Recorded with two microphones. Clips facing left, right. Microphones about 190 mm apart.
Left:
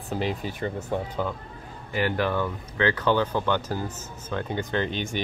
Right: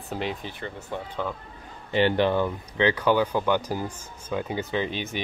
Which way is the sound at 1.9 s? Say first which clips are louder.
Right 4 dB; 25° right (ahead or behind).